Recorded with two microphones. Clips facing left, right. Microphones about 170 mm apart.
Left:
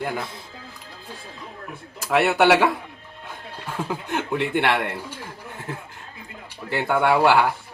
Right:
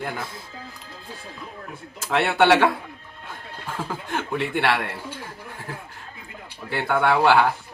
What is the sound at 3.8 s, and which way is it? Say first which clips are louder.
Speech: left 2 dB; 15° left (ahead or behind).